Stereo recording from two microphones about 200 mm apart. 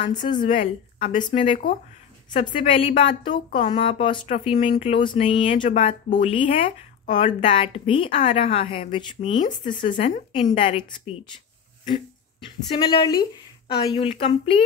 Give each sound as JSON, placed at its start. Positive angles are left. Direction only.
{"t": 0.0, "sound": "a woman's voice", "side_deg": 25}
{"t": 12.5, "sound": "a woman's voice", "side_deg": 20}